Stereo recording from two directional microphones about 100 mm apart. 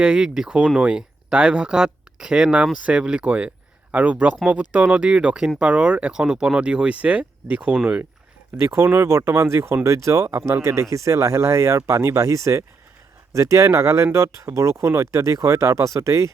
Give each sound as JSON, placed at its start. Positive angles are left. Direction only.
{"t": 0.0, "sound": "speech", "side_deg": -10}
{"t": 8.6, "sound": "speech", "side_deg": -25}